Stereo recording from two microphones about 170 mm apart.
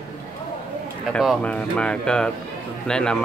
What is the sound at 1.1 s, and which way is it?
Speech, 5° left (ahead or behind).